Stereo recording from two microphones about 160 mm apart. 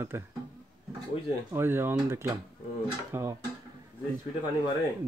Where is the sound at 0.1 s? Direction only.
15° right (ahead or behind).